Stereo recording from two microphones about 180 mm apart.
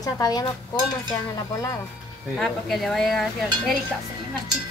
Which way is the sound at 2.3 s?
Centre (ahead or behind).